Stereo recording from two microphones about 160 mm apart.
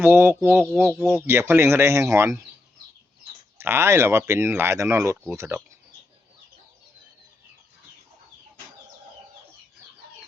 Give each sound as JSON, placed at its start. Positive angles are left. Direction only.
{"t": 0.0, "sound": "speech", "side_deg": -10}
{"t": 0.9, "sound": "speech", "side_deg": 0}
{"t": 1.1, "sound": "speech", "side_deg": -15}
{"t": 3.6, "sound": "speech", "side_deg": -15}